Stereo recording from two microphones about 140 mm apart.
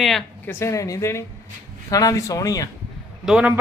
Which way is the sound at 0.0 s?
Centre (ahead or behind).